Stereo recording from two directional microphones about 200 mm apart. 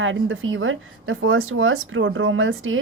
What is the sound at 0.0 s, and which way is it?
A woman's voice, 75° right (ahead or behind).